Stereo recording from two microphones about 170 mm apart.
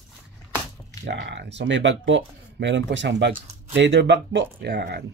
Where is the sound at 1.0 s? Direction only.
90° right.